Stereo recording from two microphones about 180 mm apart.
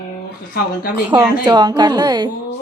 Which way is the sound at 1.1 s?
25° right (ahead or behind).